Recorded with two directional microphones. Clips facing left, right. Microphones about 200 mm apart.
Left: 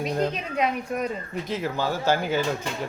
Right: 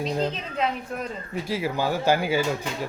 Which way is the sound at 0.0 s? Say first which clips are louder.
Left 1 dB; 10° left (ahead or behind).